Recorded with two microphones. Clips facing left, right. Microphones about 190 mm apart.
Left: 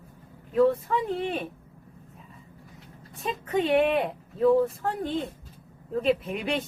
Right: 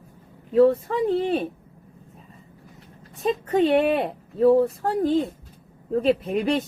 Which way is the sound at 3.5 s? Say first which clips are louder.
Right 3 dB; 35° right (ahead or behind).